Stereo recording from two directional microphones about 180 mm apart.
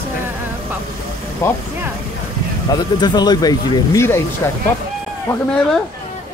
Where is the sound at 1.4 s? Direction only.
15° left (ahead or behind).